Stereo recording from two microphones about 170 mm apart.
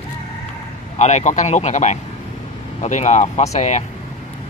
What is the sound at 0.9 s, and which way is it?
A man's voice, 45° left (ahead or behind).